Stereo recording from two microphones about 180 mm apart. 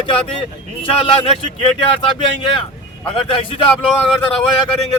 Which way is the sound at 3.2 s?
30° left (ahead or behind).